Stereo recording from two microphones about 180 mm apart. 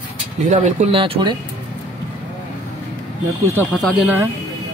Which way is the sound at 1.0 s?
25° right (ahead or behind).